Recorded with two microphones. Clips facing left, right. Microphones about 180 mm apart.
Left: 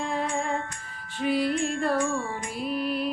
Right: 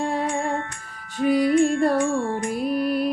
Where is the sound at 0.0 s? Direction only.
45° right (ahead or behind).